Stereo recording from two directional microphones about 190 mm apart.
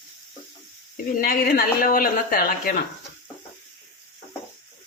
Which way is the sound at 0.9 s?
50° left (ahead or behind).